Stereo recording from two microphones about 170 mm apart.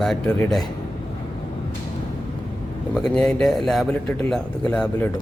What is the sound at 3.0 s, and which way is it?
A man's voice, 5° left (ahead or behind).